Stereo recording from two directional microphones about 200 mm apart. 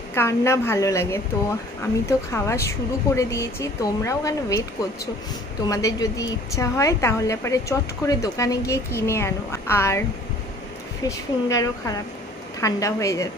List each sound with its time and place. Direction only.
0.1 s a woman's voice: 15° left (ahead or behind)
5.7 s a woman's voice: 15° left (ahead or behind)
11.1 s a woman's voice: 15° left (ahead or behind)